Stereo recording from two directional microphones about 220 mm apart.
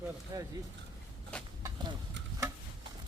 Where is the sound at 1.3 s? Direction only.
5° left (ahead or behind).